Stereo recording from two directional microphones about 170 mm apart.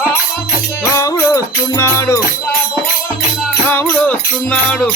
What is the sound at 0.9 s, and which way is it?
Music, 20° left (ahead or behind).